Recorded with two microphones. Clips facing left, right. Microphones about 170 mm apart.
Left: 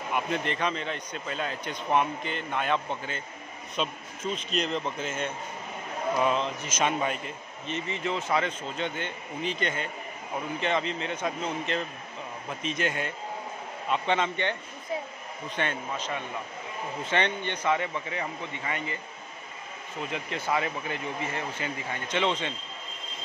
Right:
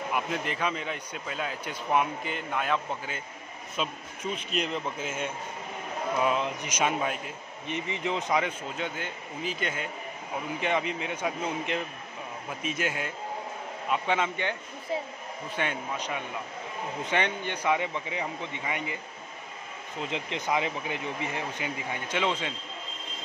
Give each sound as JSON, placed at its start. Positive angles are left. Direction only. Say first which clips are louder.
{"t": 0.1, "sound": "a man's voice", "louder": "left 3 dB", "side_deg": -5}
{"t": 7.6, "sound": "a man's voice", "louder": "even", "side_deg": -15}
{"t": 20.0, "sound": "speech", "louder": "even", "side_deg": -20}